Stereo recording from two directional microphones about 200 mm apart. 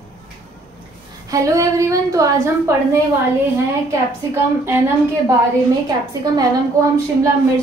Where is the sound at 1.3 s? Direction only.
15° right (ahead or behind).